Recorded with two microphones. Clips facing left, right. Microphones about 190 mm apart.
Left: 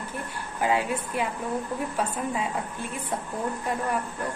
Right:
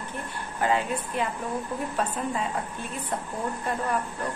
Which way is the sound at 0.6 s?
10° left (ahead or behind).